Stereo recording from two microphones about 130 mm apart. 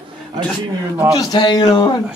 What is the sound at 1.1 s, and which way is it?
Speech, 35° left (ahead or behind).